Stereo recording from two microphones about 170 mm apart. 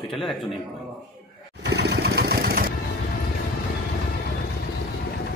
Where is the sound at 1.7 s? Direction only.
80° right; by 2.7 s 60° right (ahead or behind).